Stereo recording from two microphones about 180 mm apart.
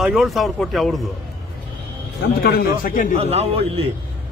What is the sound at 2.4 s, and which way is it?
Speech, 55° left (ahead or behind).